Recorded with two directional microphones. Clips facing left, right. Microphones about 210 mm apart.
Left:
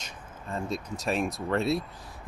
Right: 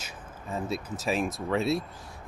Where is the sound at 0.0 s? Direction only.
5° right (ahead or behind).